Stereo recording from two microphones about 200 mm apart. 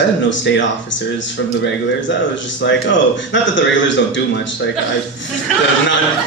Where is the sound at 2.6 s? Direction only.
65° left (ahead or behind).